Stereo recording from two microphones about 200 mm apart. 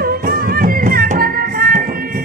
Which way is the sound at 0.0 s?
45° right (ahead or behind).